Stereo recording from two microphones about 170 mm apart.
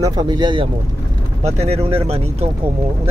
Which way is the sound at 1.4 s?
40° right (ahead or behind).